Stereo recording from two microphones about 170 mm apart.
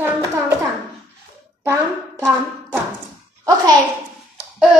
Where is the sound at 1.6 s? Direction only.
15° right (ahead or behind).